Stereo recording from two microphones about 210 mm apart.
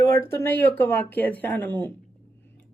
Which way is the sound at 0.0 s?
15° left (ahead or behind).